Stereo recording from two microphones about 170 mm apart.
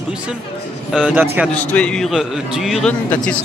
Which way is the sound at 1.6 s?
5° left (ahead or behind).